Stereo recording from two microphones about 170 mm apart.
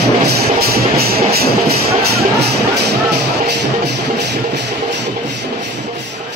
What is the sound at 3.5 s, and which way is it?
Music, 80° right.